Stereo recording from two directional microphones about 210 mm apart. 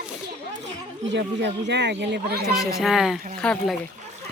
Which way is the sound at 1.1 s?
55° right (ahead or behind).